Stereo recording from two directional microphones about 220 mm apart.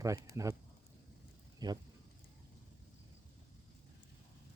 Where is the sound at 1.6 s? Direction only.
20° right (ahead or behind).